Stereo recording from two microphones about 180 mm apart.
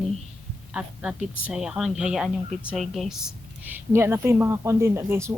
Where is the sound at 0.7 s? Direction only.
5° right (ahead or behind).